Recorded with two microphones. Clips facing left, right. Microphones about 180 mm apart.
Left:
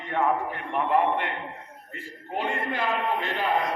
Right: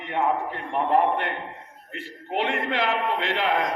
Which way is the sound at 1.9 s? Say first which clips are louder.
Right 4 dB; 85° right.